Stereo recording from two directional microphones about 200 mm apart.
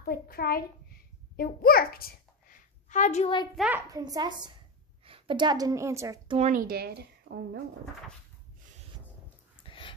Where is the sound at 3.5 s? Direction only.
5° right (ahead or behind).